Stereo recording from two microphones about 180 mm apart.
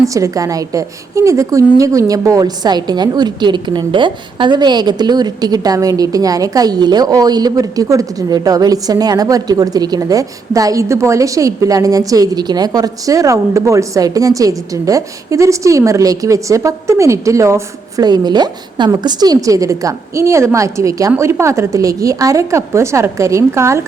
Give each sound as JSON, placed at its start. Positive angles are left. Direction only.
{"t": 0.0, "sound": "a woman's voice", "side_deg": -20}